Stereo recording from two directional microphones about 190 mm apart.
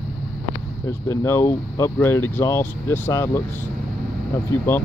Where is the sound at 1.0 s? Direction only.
15° left (ahead or behind).